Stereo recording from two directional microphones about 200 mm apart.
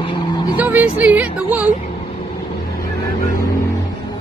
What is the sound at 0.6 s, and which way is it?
Speech, 10° right (ahead or behind).